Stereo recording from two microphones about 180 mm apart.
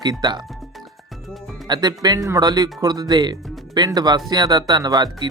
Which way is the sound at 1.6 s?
25° right (ahead or behind).